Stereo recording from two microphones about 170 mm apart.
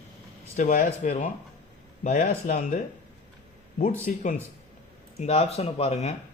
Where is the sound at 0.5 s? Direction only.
50° left (ahead or behind).